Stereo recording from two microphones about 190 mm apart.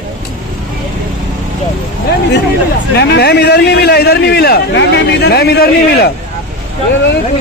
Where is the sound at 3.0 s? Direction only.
60° left (ahead or behind).